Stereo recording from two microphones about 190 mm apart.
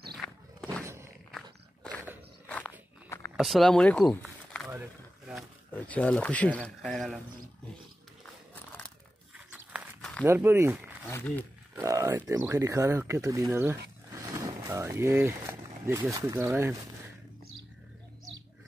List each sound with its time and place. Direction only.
0.2 s walk: 10° left (ahead or behind)
1.3 s a sound: 5° left (ahead or behind)
2.4 s dog: 10° left (ahead or behind)
3.1 s a sound: 15° left (ahead or behind)
3.3 s speech: centre (ahead or behind)
5.3 s speech: 10° left (ahead or behind)
9.5 s a sound: 5° right (ahead or behind)
10.2 s speech: 10° right (ahead or behind)
11.1 s speech: 10° left (ahead or behind)
11.7 s speech: 15° right (ahead or behind)